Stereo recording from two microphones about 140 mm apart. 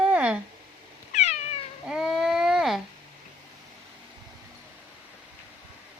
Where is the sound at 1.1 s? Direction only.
55° left (ahead or behind).